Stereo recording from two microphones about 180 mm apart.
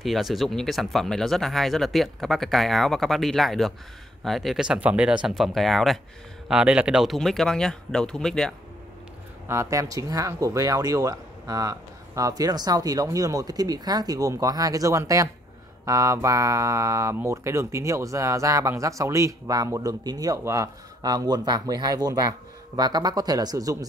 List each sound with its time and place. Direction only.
0.0 s speech: centre (ahead or behind)
9.5 s speech: 15° right (ahead or behind)